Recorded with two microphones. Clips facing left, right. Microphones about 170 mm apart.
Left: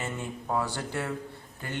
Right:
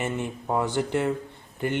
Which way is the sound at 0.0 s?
20° right (ahead or behind).